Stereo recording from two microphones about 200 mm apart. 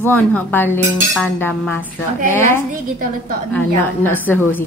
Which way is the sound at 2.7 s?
45° right (ahead or behind).